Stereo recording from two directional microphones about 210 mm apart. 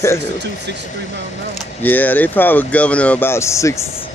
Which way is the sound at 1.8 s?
10° left (ahead or behind).